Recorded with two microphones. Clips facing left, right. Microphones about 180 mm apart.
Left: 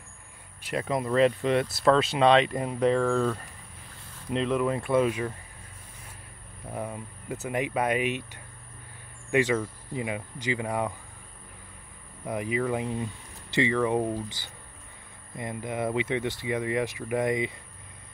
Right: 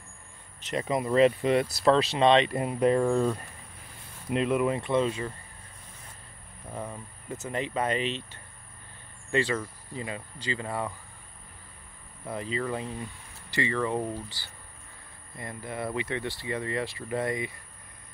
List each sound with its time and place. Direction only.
0.7 s speech: centre (ahead or behind)
2.5 s speech: 10° right (ahead or behind)
4.8 s speech: 10° left (ahead or behind)
6.7 s speech: 10° left (ahead or behind)
9.3 s speech: 15° left (ahead or behind)
12.3 s speech: 15° left (ahead or behind)